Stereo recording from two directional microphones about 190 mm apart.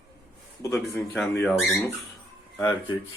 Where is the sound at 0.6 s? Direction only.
15° left (ahead or behind).